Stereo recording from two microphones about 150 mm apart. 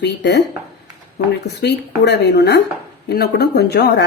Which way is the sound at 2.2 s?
90° left.